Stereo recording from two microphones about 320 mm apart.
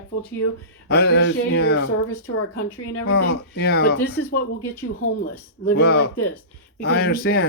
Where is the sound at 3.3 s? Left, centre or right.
Left.